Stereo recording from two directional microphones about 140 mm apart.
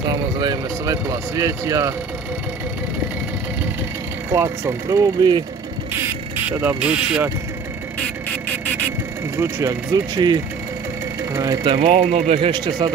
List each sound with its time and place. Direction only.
0.0 s speech: 30° right (ahead or behind)
4.3 s speech: 20° right (ahead or behind)
5.9 s a sound: 15° right (ahead or behind)
6.8 s speech: 5° right (ahead or behind)
9.4 s speech: 25° right (ahead or behind)
11.3 s speech: 25° right (ahead or behind)
11.7 s speech: 45° right (ahead or behind)
12.5 s speech: 30° right (ahead or behind)